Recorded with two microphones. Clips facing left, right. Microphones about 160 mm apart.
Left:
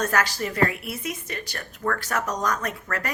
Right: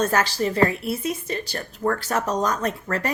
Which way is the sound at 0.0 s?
30° right (ahead or behind).